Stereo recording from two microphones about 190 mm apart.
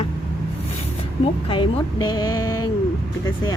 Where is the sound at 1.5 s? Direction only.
25° left (ahead or behind).